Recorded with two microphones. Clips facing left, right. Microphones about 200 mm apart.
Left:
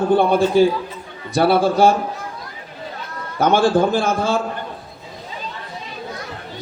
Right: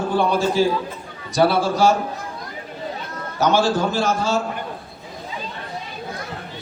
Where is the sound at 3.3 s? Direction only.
55° left (ahead or behind).